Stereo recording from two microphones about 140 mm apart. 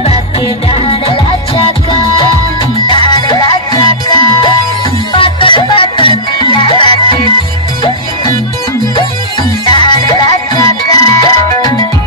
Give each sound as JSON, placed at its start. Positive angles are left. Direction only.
{"t": 0.7, "sound": "music", "side_deg": 40}
{"t": 2.9, "sound": "music", "side_deg": 30}
{"t": 9.8, "sound": "music", "side_deg": 35}